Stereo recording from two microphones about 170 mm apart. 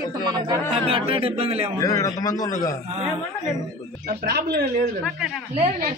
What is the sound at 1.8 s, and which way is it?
Speech, 20° left (ahead or behind).